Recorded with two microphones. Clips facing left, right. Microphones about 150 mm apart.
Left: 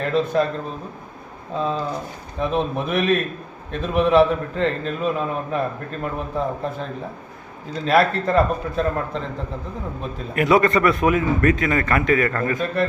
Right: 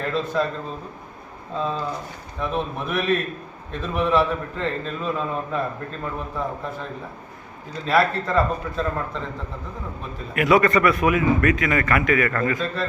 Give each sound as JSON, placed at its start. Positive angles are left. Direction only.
{"t": 0.0, "sound": "speech", "side_deg": 20}
{"t": 1.5, "sound": "a man's voice", "side_deg": 20}
{"t": 10.3, "sound": "a man's voice", "side_deg": 30}